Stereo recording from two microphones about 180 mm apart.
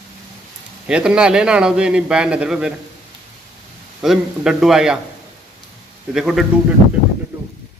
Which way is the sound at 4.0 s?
Centre (ahead or behind).